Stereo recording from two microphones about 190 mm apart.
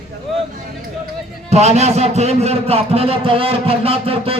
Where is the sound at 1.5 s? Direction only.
35° right (ahead or behind).